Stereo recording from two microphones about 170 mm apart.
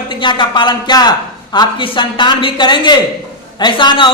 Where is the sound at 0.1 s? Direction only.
30° left (ahead or behind).